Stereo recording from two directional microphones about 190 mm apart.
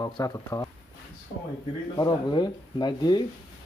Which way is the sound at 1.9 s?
25° left (ahead or behind).